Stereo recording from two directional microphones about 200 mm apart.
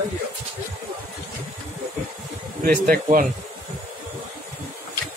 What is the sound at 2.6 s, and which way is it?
Speech, 40° right (ahead or behind).